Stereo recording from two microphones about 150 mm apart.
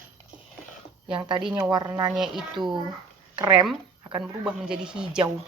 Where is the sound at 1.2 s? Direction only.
30° right (ahead or behind).